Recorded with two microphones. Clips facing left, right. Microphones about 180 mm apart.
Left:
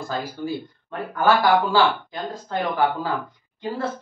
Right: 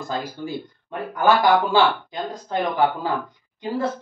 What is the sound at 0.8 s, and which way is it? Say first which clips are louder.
Speech: right 1 dB; 15° right (ahead or behind).